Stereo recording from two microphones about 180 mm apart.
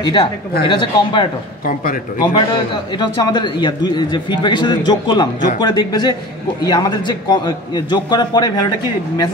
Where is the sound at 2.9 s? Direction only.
25° left (ahead or behind).